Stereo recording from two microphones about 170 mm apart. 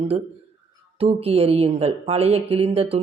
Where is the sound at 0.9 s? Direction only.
35° right (ahead or behind).